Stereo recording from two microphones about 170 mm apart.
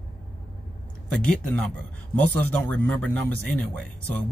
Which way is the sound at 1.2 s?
5° left (ahead or behind).